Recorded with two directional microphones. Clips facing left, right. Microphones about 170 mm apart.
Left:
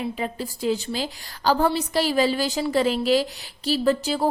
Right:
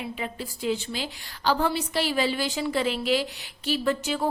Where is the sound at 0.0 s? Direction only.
40° left (ahead or behind).